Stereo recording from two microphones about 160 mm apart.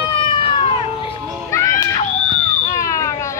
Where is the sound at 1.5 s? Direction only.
20° left (ahead or behind).